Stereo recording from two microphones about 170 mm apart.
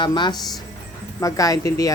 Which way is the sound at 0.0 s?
25° left (ahead or behind).